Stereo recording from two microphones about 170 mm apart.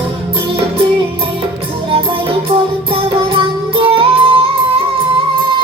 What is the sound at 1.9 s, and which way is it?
Music, 30° right (ahead or behind).